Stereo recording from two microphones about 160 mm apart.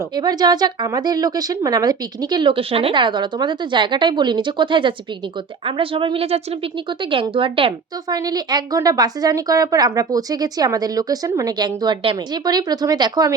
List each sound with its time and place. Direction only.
0.2 s a woman's voice: 25° right (ahead or behind)